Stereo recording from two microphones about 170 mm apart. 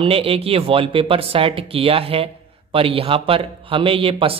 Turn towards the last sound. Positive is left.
turn(degrees=-35)  # may be behind; listen again after turning